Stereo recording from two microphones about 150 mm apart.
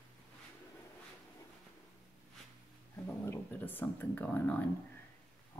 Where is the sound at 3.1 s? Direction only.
15° left (ahead or behind).